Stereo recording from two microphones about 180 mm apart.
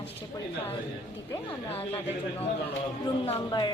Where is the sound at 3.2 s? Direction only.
25° left (ahead or behind).